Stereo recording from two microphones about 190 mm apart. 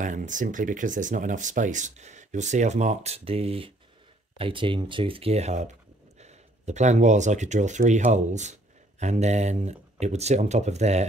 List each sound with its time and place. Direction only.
0.0 s speech: 40° right (ahead or behind)